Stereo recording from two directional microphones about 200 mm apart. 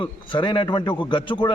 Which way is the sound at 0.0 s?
25° left (ahead or behind).